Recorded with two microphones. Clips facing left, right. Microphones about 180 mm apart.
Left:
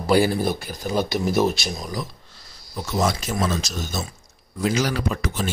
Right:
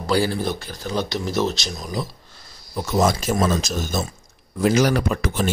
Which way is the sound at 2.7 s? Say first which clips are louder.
Right 4 dB; 50° right (ahead or behind).